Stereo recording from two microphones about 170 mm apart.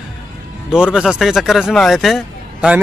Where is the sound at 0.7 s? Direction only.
5° right (ahead or behind).